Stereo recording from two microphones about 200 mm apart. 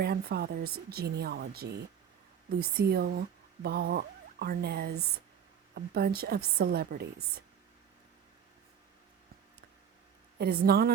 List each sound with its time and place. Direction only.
0.0 s speech: 50° right (ahead or behind)
10.3 s speech: 50° right (ahead or behind)